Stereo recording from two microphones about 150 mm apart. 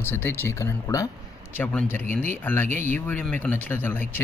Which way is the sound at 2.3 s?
15° left (ahead or behind).